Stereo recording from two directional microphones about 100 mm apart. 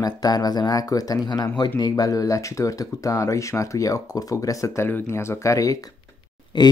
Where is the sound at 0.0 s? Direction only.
40° left (ahead or behind).